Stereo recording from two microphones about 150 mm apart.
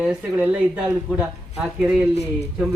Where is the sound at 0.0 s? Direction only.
5° right (ahead or behind).